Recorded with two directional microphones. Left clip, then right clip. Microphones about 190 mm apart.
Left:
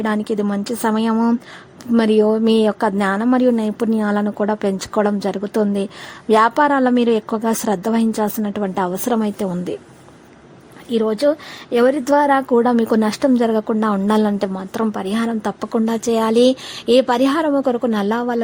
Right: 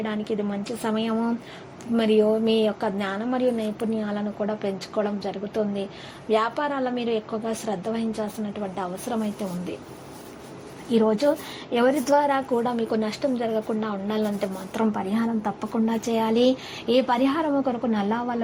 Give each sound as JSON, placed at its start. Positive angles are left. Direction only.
{"t": 0.0, "sound": "a woman's voice", "side_deg": 45}
{"t": 10.9, "sound": "a woman's voice", "side_deg": 25}